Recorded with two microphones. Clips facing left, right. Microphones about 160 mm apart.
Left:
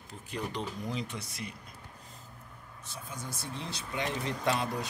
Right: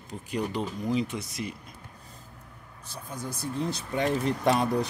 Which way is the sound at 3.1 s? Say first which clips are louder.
Right 7 dB; 40° right (ahead or behind).